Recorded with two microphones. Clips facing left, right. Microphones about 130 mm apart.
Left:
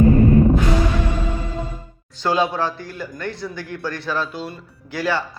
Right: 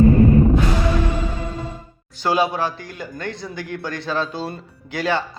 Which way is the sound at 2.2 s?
10° right (ahead or behind).